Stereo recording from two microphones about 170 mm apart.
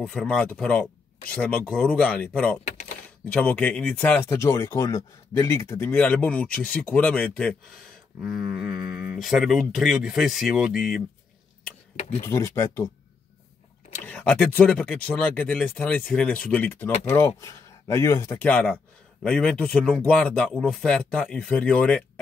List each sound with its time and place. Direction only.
0.0 s speech: 5° left (ahead or behind)
12.2 s speech: 15° left (ahead or behind)
14.0 s speech: 10° left (ahead or behind)